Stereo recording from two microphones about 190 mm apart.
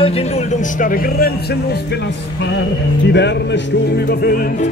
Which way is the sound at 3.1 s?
65° left (ahead or behind).